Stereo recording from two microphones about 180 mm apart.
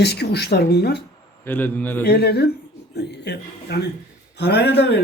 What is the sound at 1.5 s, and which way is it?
Speech, 10° left (ahead or behind).